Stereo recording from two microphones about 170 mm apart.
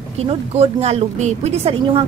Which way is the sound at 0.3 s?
40° right (ahead or behind).